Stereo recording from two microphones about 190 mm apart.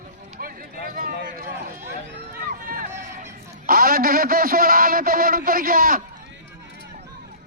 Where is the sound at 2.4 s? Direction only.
50° right (ahead or behind).